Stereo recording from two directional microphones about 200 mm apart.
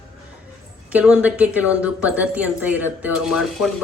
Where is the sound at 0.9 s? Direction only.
5° right (ahead or behind).